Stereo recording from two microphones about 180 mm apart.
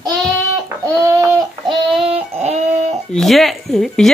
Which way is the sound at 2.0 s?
35° right (ahead or behind).